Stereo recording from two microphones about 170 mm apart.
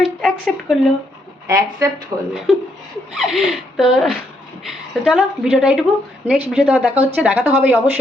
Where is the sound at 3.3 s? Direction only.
Centre (ahead or behind).